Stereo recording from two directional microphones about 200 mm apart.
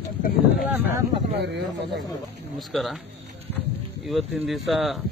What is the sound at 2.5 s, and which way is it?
Speech, centre (ahead or behind).